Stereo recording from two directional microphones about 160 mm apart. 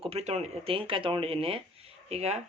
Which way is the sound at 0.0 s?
40° right (ahead or behind).